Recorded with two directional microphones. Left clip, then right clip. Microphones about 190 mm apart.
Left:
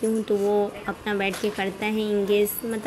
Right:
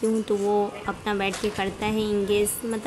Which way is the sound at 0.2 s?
5° right (ahead or behind).